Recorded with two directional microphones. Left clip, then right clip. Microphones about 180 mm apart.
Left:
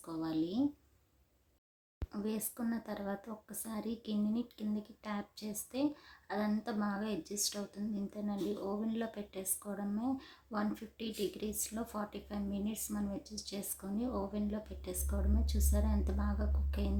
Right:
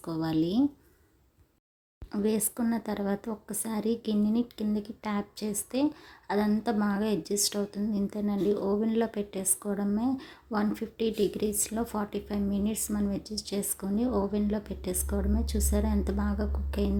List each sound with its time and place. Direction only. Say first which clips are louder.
0.0 s speech: right 8 dB; 35° right (ahead or behind)
2.2 s speech: right 11 dB; 40° right (ahead or behind)